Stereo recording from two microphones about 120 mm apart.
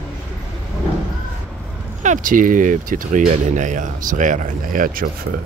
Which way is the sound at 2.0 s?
90° right.